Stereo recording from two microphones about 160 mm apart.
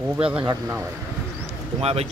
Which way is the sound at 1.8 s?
40° right (ahead or behind).